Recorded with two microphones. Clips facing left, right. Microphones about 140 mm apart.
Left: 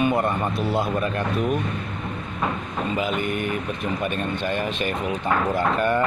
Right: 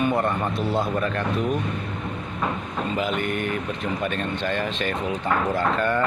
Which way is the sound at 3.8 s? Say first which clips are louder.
Left 1 dB; 10° left (ahead or behind).